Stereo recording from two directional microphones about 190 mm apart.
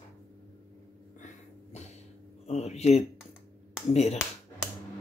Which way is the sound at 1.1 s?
35° left (ahead or behind).